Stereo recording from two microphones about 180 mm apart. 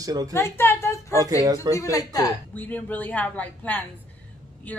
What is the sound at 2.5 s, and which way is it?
Speech, 10° left (ahead or behind).